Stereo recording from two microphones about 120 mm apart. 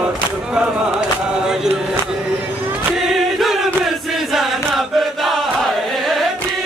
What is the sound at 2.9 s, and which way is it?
Choir, centre (ahead or behind).